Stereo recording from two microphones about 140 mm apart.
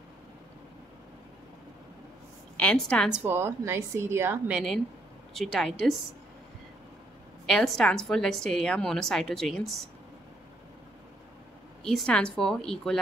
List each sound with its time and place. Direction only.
2.5 s a woman's voice: 5° left (ahead or behind)
3.1 s a woman's voice: 15° right (ahead or behind)
4.5 s a woman's voice: 5° right (ahead or behind)
7.4 s a woman's voice: centre (ahead or behind)
11.8 s a woman's voice: 5° left (ahead or behind)